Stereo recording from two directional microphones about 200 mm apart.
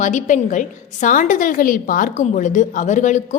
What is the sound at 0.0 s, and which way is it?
A woman's voice, 35° left (ahead or behind).